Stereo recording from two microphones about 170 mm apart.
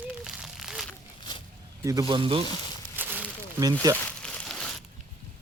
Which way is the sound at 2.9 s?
10° right (ahead or behind).